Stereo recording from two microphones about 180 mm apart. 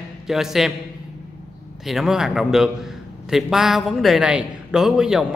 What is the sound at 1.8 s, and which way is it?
A man's voice, centre (ahead or behind).